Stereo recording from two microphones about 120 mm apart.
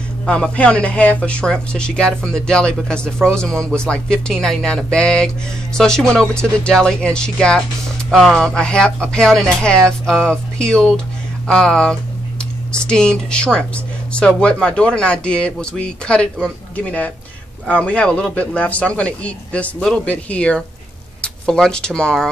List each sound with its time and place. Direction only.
0.3 s speech: 10° left (ahead or behind)